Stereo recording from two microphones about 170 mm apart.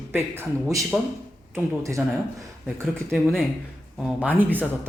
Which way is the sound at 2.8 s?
5° left (ahead or behind).